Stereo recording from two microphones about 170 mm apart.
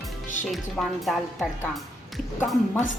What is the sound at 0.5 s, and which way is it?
A woman's voice, centre (ahead or behind).